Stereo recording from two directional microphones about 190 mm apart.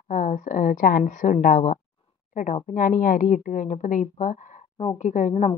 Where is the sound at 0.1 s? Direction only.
40° left (ahead or behind).